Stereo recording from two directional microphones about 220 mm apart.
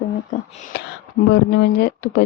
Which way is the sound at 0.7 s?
50° left (ahead or behind).